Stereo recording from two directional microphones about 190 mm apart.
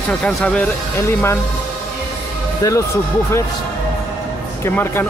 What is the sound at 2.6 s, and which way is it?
Speech, 15° left (ahead or behind).